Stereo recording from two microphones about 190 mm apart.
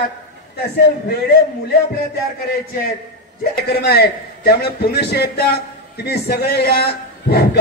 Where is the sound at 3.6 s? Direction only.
55° left (ahead or behind).